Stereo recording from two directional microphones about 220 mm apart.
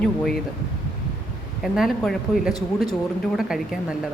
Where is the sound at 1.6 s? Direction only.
Centre (ahead or behind).